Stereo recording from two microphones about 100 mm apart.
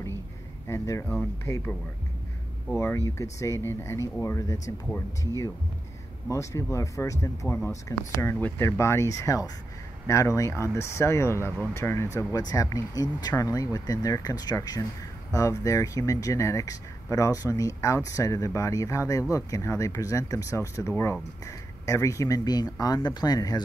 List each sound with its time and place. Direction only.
0.7 s speech: 30° left (ahead or behind)
2.7 s speech: 25° left (ahead or behind)
8.4 s speech: 15° left (ahead or behind)
8.6 s speech: 25° left (ahead or behind)
12.4 s speech: 40° left (ahead or behind)